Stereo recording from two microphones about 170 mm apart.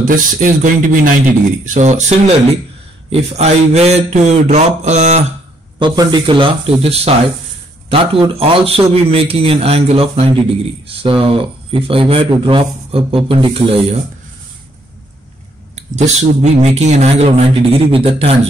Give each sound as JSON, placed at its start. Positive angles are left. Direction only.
{"t": 0.1, "sound": "a man's voice", "side_deg": -50}
{"t": 5.8, "sound": "a man's voice", "side_deg": -25}
{"t": 15.7, "sound": "a man's voice", "side_deg": -40}